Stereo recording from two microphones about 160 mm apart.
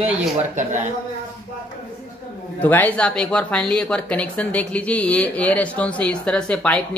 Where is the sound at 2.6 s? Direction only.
10° left (ahead or behind).